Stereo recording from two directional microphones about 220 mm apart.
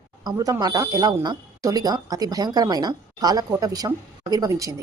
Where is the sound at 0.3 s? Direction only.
15° right (ahead or behind).